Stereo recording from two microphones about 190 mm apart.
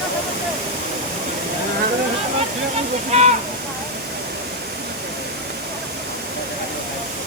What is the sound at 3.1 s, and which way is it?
Waterfall, 35° right (ahead or behind).